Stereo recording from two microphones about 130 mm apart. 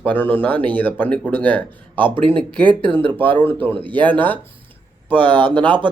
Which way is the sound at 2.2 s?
40° right (ahead or behind).